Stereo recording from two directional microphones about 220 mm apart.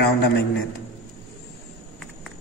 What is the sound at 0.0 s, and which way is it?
Speech, 50° left (ahead or behind).